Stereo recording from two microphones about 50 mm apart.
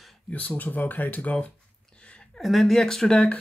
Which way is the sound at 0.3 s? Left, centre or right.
Left.